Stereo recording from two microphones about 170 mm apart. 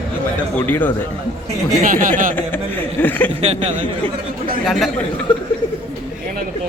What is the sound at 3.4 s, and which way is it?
Speech, 40° right (ahead or behind).